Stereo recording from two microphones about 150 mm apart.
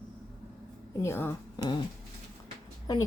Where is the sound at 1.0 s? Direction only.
15° left (ahead or behind).